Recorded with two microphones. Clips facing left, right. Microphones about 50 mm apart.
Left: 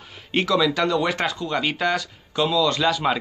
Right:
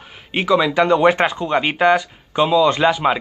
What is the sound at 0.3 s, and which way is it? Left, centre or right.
Speech, centre.